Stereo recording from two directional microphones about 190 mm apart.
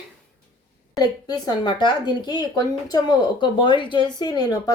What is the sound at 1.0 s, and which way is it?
Speech, 20° left (ahead or behind).